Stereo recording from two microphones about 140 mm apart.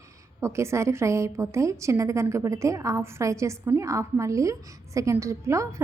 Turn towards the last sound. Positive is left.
turn(degrees=-20)  # may be behind; listen again after turning